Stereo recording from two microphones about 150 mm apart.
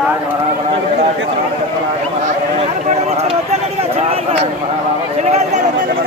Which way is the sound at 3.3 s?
45° right (ahead or behind).